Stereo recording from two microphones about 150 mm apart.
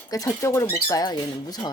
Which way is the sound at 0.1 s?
20° left (ahead or behind).